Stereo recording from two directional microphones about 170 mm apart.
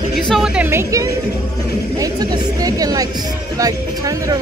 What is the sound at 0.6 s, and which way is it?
Music, 15° right (ahead or behind).